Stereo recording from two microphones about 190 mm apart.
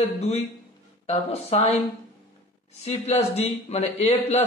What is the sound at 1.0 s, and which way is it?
Speech, 35° left (ahead or behind).